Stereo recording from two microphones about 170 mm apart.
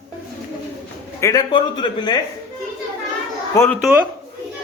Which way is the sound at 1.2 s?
25° left (ahead or behind).